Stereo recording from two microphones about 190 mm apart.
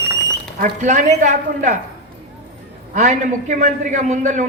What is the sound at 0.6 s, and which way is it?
A man's voice, 40° right (ahead or behind).